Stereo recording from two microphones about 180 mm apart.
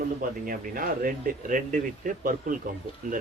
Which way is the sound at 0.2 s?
50° right (ahead or behind).